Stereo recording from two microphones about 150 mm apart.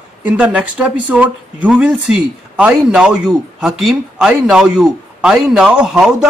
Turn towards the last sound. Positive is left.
turn(degrees=-5)  # may be behind; listen again after turning